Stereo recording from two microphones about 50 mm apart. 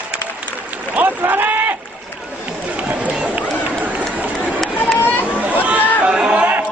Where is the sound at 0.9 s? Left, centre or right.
Right.